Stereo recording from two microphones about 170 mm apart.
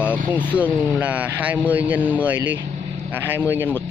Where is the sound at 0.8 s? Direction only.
10° right (ahead or behind).